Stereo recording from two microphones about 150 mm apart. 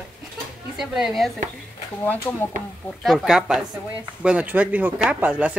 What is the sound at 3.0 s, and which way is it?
A woman's voice, centre (ahead or behind).